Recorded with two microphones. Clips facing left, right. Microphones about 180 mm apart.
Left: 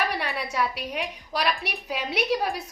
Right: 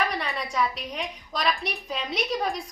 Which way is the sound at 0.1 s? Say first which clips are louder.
Left 1 dB; 5° left (ahead or behind).